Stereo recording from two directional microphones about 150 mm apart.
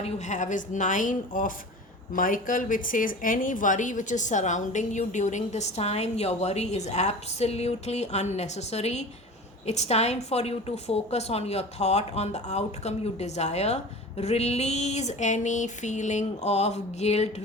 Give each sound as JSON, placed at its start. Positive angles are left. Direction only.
{"t": 0.0, "sound": "a woman's voice", "side_deg": 50}